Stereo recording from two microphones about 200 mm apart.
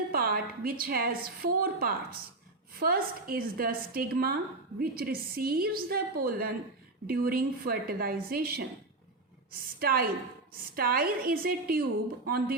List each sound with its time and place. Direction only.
0.1 s a woman's voice: 50° right (ahead or behind)